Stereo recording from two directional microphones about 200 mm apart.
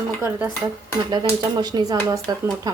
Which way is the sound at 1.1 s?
20° right (ahead or behind).